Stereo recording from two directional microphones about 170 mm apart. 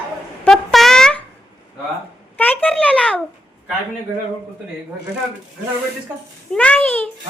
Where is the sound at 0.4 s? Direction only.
Centre (ahead or behind).